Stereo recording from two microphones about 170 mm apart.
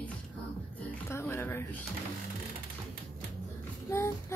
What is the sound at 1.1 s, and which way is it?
Speech, 15° left (ahead or behind).